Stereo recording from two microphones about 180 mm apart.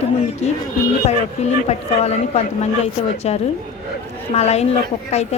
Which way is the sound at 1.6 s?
35° left (ahead or behind).